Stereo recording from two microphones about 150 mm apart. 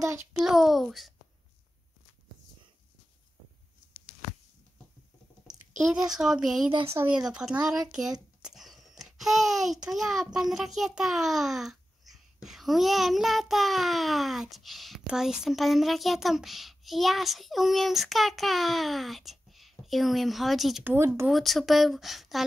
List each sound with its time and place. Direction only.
0.3 s speech: 5° right (ahead or behind)
6.0 s speech: 5° right (ahead or behind)
6.9 s speech: 15° right (ahead or behind)
7.2 s a child's voice: 5° right (ahead or behind)
20.8 s speech: 15° right (ahead or behind)
21.3 s speech: centre (ahead or behind)